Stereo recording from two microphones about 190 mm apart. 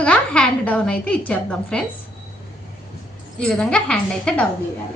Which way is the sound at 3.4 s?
5° left (ahead or behind).